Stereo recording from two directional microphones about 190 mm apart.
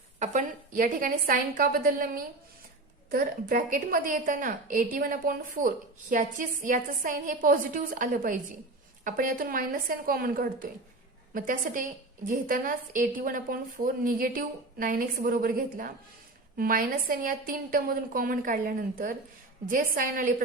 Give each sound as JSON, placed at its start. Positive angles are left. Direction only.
{"t": 0.2, "sound": "a woman's voice", "side_deg": -45}